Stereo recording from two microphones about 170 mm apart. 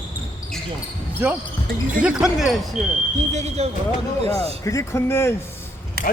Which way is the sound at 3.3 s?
40° right (ahead or behind).